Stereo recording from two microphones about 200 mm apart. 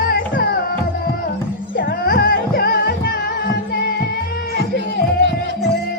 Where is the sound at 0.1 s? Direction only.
50° left (ahead or behind).